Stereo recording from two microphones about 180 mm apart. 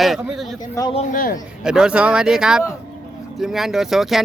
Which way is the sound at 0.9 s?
35° left (ahead or behind).